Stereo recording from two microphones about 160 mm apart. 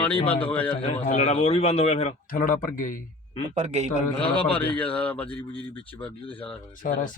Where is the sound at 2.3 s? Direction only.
60° left (ahead or behind).